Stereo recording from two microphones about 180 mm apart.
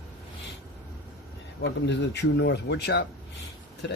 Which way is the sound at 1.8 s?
75° left (ahead or behind).